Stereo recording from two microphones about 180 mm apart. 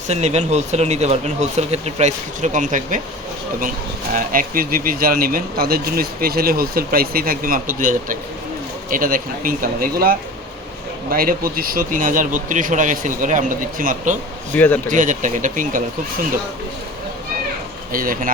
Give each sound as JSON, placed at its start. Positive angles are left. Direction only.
{"t": 0.1, "sound": "speech", "side_deg": -40}
{"t": 4.1, "sound": "speech", "side_deg": -50}
{"t": 14.5, "sound": "speech", "side_deg": 10}
{"t": 14.8, "sound": "speech", "side_deg": -45}
{"t": 17.9, "sound": "speech", "side_deg": -50}